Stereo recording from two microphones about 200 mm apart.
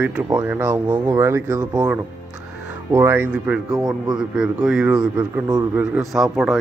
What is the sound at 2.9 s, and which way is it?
A man's voice, 10° right (ahead or behind).